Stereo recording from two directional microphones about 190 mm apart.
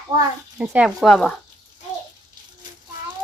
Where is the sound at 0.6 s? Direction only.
5° right (ahead or behind).